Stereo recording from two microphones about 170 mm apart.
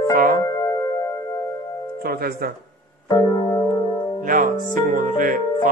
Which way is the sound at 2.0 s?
60° right (ahead or behind).